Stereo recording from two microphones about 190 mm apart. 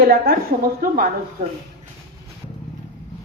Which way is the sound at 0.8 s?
50° right (ahead or behind).